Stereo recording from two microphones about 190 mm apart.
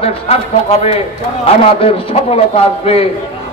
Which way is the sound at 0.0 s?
35° left (ahead or behind).